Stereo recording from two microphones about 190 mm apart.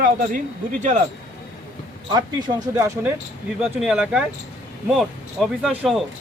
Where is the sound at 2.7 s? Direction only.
10° right (ahead or behind).